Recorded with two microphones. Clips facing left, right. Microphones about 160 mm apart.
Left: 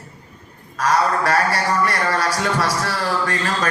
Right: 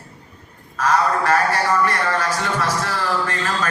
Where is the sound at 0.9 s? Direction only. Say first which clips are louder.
Even; 35° left (ahead or behind).